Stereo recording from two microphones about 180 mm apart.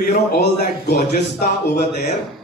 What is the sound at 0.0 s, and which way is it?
Speech, 55° left (ahead or behind).